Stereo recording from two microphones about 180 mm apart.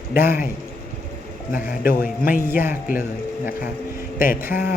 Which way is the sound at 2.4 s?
10° right (ahead or behind).